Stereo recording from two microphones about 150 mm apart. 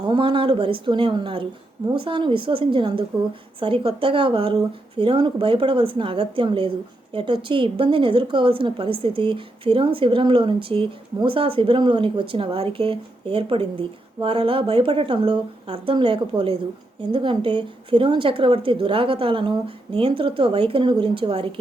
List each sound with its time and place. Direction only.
0.1 s speech: 35° right (ahead or behind)